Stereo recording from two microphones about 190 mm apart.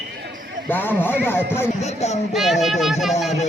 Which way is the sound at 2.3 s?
Centre (ahead or behind).